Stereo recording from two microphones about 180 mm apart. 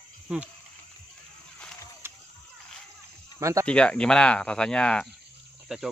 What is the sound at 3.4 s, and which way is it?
Speech, 15° right (ahead or behind).